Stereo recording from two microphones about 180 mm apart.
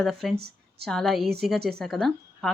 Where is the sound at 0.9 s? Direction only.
Centre (ahead or behind).